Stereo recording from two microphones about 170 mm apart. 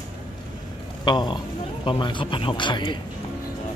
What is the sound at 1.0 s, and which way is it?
Speech, 25° left (ahead or behind).